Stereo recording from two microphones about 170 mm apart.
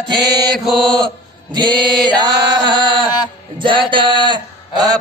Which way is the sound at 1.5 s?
25° right (ahead or behind).